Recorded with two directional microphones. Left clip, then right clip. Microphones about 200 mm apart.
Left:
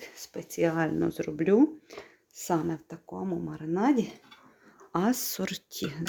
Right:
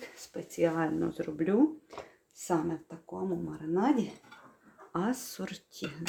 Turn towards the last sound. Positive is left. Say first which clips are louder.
# left 5 dB
turn(degrees=45)  # may be behind; listen again after turning